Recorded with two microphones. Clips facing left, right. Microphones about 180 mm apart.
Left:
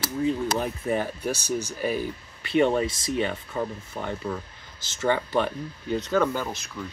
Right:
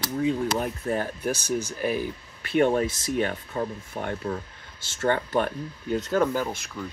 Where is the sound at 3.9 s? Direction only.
5° right (ahead or behind).